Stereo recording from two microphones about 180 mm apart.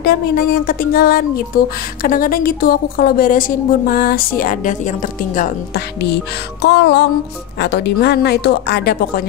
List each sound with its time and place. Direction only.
0.0 s a woman's voice: 60° left (ahead or behind)
6.6 s music: 70° left (ahead or behind)
7.5 s speech: 70° left (ahead or behind)